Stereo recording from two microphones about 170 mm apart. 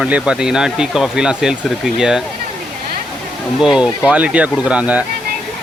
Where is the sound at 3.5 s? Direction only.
5° right (ahead or behind).